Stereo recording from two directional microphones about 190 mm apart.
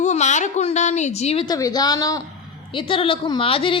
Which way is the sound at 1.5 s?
20° left (ahead or behind).